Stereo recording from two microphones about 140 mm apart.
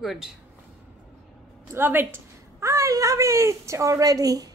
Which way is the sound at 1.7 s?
15° right (ahead or behind).